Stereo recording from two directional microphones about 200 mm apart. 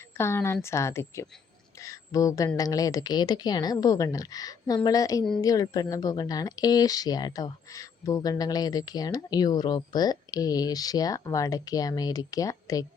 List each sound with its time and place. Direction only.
0.2 s a woman's voice: 15° left (ahead or behind)